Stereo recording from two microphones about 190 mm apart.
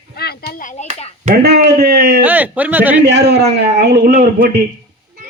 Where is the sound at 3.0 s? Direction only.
60° right (ahead or behind).